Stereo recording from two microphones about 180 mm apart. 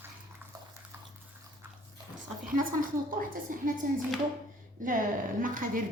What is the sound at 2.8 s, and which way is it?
A woman's voice, 50° right (ahead or behind).